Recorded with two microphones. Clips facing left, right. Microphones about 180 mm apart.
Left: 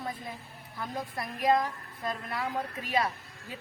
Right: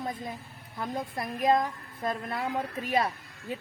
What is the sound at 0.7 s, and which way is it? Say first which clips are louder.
A woman's voice: right 3 dB; 20° right (ahead or behind).